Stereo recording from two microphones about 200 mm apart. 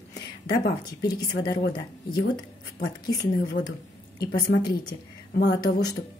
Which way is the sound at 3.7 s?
20° left (ahead or behind).